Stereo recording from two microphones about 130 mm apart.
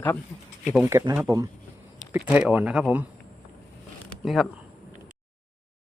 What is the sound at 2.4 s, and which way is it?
Speech, 10° right (ahead or behind).